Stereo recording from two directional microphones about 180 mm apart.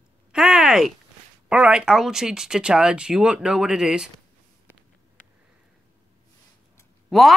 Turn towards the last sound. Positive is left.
turn(degrees=0)  # may be behind; listen again after turning